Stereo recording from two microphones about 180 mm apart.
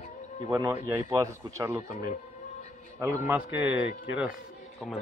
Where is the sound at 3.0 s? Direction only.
15° right (ahead or behind).